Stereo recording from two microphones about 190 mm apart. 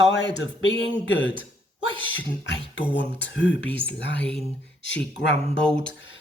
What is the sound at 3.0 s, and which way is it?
Speech, 75° left (ahead or behind).